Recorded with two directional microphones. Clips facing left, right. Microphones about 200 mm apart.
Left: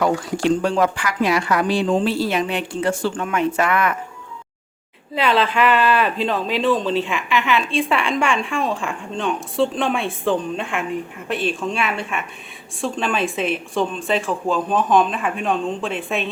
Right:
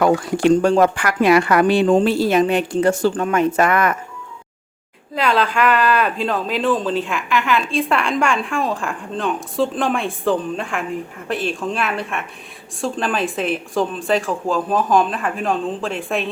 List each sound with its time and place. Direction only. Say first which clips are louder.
0.0 s speech: right 4 dB; 50° right (ahead or behind)
5.1 s speech: even; centre (ahead or behind)